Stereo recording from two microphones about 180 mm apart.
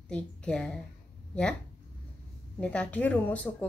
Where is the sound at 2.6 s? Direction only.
5° left (ahead or behind).